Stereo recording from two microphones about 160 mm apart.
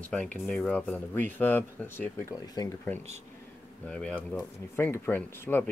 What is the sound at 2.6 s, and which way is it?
Speech, 25° left (ahead or behind).